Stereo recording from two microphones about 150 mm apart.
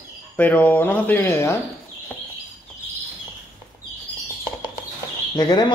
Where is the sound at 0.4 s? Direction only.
10° left (ahead or behind).